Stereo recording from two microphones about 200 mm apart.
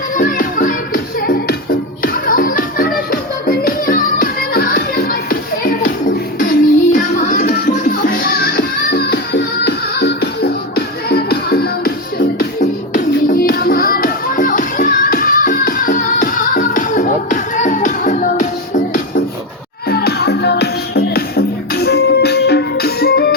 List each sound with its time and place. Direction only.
0.2 s music: 45° left (ahead or behind)
12.9 s music: 45° left (ahead or behind)
19.9 s music: 50° left (ahead or behind)